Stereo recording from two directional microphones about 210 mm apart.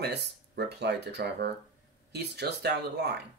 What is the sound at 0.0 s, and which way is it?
Speech, 50° right (ahead or behind).